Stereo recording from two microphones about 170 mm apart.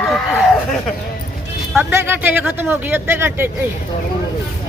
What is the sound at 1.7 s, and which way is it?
Speech, 15° right (ahead or behind).